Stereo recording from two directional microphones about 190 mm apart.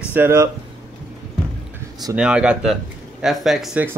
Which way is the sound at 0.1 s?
15° right (ahead or behind).